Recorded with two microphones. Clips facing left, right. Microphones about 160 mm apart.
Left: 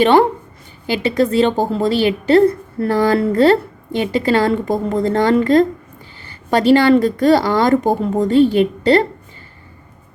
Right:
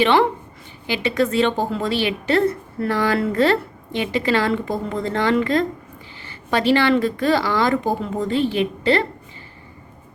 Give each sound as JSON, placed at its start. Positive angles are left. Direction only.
{"t": 0.0, "sound": "a woman's voice", "side_deg": 45}